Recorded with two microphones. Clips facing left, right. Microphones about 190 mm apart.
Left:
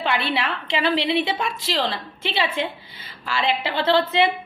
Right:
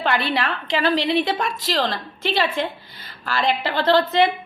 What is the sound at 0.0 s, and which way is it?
A woman's voice, 45° right (ahead or behind).